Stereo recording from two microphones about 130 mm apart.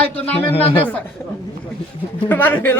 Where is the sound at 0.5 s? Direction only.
45° left (ahead or behind).